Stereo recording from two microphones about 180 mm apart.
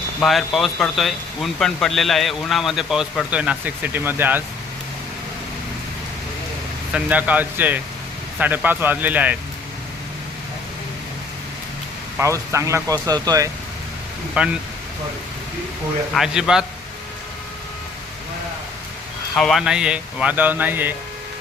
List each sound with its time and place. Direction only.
0.2 s speech: centre (ahead or behind)
6.9 s speech: 10° right (ahead or behind)
12.1 s speech: 15° right (ahead or behind)
14.4 s speech: 5° right (ahead or behind)
16.1 s speech: 5° right (ahead or behind)
19.4 s speech: centre (ahead or behind)